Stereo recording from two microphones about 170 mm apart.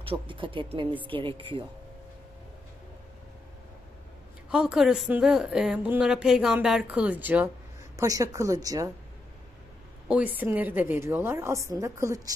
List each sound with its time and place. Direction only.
0.0 s speech: 30° right (ahead or behind)
4.5 s speech: 5° right (ahead or behind); by 8.8 s 20° right (ahead or behind)
10.0 s a woman's voice: 10° right (ahead or behind)